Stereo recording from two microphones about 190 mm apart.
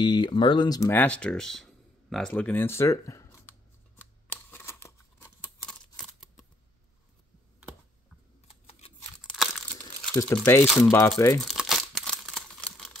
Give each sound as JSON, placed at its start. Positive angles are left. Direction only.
{"t": 0.0, "sound": "speech", "side_deg": 25}
{"t": 4.0, "sound": "scissors", "side_deg": 10}
{"t": 9.2, "sound": "a sound", "side_deg": 0}
{"t": 9.7, "sound": "crumpling", "side_deg": 15}
{"t": 10.9, "sound": "speech", "side_deg": 15}
{"t": 11.4, "sound": "crumpling", "side_deg": 0}